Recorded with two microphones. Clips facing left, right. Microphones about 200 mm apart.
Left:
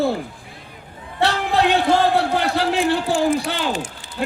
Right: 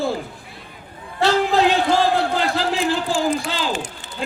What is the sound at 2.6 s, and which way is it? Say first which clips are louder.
Speech: left 2 dB; 60° left (ahead or behind).